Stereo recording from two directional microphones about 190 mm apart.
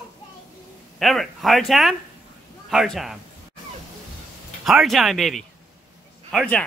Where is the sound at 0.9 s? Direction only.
Centre (ahead or behind).